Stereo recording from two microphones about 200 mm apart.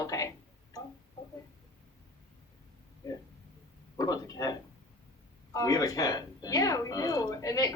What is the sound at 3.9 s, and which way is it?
Speech, 20° left (ahead or behind).